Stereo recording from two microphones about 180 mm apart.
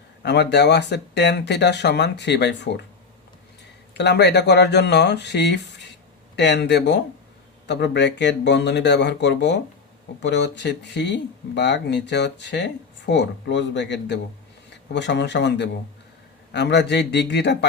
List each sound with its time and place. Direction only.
0.2 s speech: 70° left (ahead or behind)
3.9 s speech: 70° left (ahead or behind)